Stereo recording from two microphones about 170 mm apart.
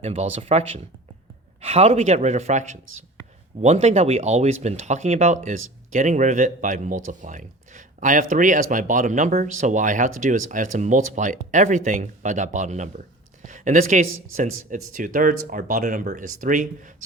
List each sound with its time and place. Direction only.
0.0 s speech: 40° right (ahead or behind)
1.6 s speech: 40° right (ahead or behind)